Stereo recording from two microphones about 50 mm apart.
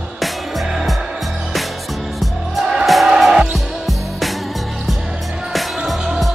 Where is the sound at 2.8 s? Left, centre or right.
Centre.